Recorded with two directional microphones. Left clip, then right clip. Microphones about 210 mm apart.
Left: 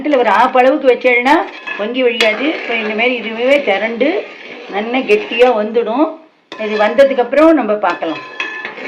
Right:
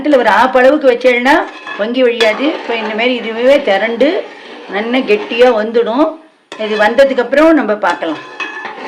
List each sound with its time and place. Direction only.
0.1 s speech: 55° right (ahead or behind)